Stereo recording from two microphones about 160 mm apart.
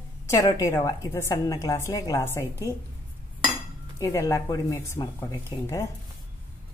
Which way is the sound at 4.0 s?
20° left (ahead or behind).